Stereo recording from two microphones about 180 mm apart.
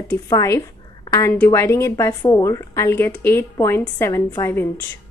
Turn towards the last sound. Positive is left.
turn(degrees=15)  # may be behind; listen again after turning